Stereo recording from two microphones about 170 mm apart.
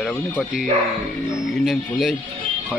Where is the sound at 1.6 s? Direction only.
Centre (ahead or behind).